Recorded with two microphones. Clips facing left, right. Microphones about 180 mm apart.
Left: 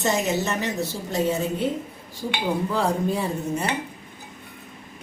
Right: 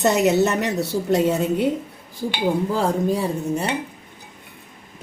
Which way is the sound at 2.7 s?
40° right (ahead or behind).